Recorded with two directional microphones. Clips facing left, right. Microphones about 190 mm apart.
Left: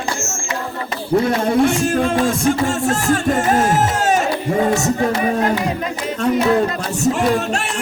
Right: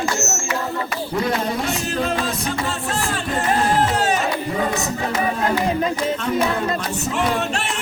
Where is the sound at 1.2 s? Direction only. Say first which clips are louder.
Left 7 dB; 50° left (ahead or behind).